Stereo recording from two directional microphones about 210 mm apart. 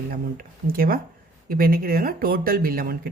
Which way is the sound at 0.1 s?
45° right (ahead or behind).